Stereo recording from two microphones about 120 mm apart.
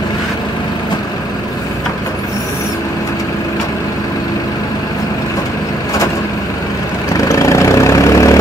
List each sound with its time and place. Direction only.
7.2 s vehicle: 25° left (ahead or behind)